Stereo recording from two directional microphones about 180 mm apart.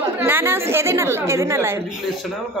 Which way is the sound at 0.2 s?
10° right (ahead or behind).